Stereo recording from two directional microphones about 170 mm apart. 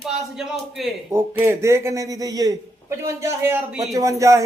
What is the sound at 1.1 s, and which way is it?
Speech, 15° right (ahead or behind).